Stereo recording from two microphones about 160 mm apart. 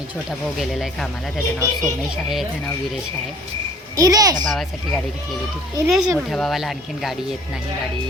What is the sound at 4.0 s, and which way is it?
Speech, 20° right (ahead or behind).